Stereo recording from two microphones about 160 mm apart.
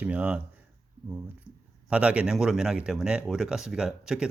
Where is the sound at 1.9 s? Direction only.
5° right (ahead or behind).